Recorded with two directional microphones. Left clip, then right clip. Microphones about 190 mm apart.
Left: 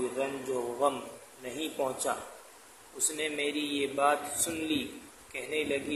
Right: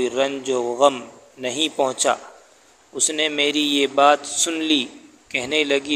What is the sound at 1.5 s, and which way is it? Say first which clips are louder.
A man's voice: right 12 dB; 40° right (ahead or behind).